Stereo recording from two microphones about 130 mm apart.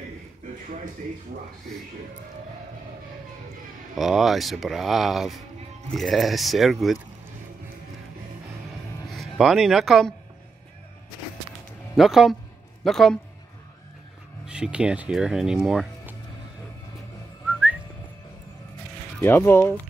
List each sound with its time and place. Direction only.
3.9 s speech: centre (ahead or behind)
9.1 s speech: centre (ahead or behind)
11.9 s speech: centre (ahead or behind)
14.4 s speech: 5° right (ahead or behind)
19.2 s speech: 20° left (ahead or behind)